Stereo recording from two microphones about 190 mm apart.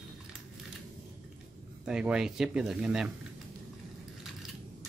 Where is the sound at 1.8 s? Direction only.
5° right (ahead or behind).